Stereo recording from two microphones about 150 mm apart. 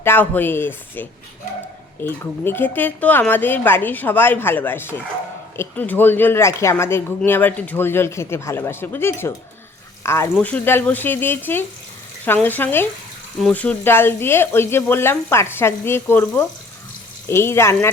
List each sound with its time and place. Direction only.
0.0 s speech: 15° left (ahead or behind)
2.0 s speech: 15° left (ahead or behind)